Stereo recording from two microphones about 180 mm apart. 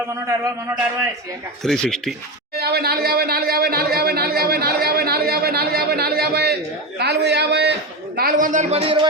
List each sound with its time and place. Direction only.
1.6 s speech: 5° left (ahead or behind)
2.6 s speech: 60° right (ahead or behind); by 9.0 s 30° right (ahead or behind)